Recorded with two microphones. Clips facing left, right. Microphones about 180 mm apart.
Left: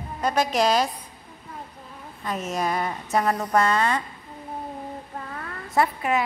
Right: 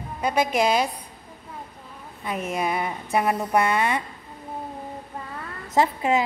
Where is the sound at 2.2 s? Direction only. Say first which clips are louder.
Even; 10° right (ahead or behind).